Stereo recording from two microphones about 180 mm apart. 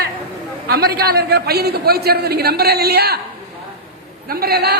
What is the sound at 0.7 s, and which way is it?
A man's voice, 60° right (ahead or behind).